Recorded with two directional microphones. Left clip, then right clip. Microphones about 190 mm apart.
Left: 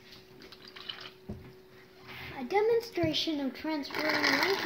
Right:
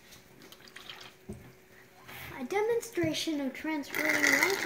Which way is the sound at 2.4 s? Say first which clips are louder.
Left 3 dB; 5° left (ahead or behind).